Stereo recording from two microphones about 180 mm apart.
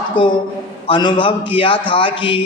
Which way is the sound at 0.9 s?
25° left (ahead or behind).